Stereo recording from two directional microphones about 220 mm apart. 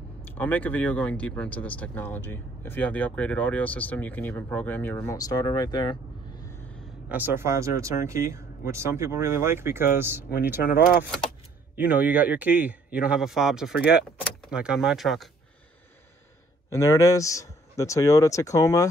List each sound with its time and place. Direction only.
0.2 s speech: 10° left (ahead or behind)
7.1 s a man's voice: 10° right (ahead or behind)
10.3 s speech: 45° left (ahead or behind)
11.7 s a man's voice: 5° right (ahead or behind)
16.7 s speech: 15° left (ahead or behind)